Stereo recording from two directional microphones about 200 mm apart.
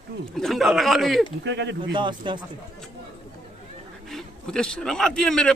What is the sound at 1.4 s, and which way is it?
Speech, 60° right (ahead or behind).